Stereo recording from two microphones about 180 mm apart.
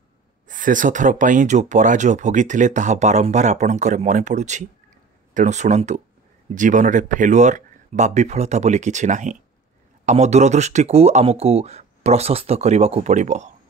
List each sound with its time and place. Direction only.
0.5 s speech: 45° right (ahead or behind)